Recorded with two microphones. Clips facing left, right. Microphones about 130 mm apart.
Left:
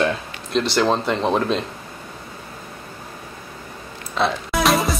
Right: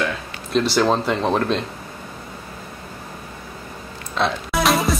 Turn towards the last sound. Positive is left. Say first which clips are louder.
# even
turn(degrees=0)  # may be behind; listen again after turning